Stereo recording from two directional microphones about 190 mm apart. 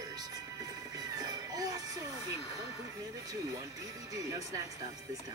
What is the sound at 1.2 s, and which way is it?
Music, 20° right (ahead or behind).